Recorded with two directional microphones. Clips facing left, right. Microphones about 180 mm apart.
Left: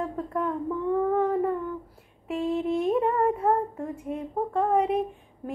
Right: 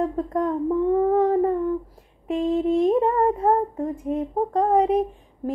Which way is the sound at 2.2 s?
30° right (ahead or behind).